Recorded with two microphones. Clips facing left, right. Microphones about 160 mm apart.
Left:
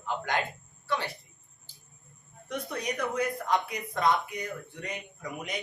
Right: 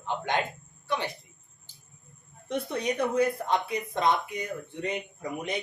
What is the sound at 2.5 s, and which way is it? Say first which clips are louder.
Speech: right 4 dB; 25° right (ahead or behind).